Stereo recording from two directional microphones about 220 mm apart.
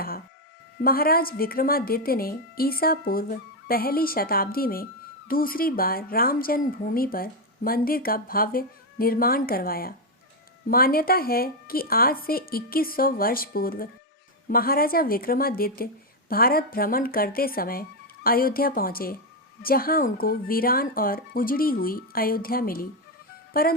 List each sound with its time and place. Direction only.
0.8 s a woman's voice: 40° left (ahead or behind)